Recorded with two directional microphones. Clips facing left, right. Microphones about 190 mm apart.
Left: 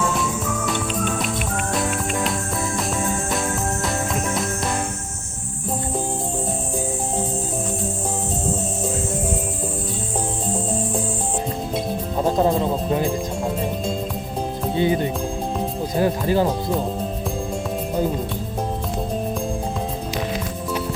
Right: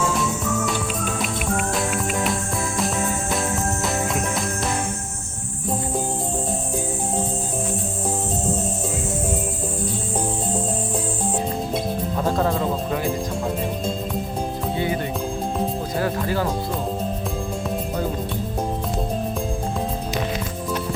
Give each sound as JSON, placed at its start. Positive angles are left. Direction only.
{"t": 0.0, "sound": "music", "side_deg": 0}
{"t": 12.1, "sound": "music", "side_deg": 20}
{"t": 14.8, "sound": "music", "side_deg": 25}